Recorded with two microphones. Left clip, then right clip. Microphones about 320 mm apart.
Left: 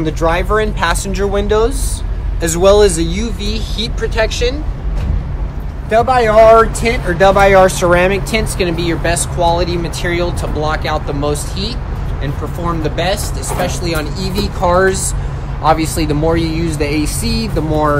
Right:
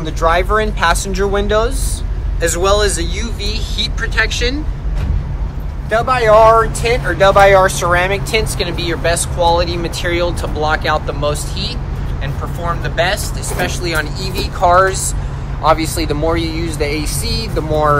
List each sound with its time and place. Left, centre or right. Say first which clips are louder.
0.0 s speech: right 1 dB; left; by 4.6 s centre
5.9 s speech: left 1 dB; left